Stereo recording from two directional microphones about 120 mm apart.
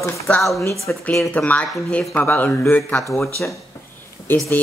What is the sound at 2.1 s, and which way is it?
Speech, 15° left (ahead or behind).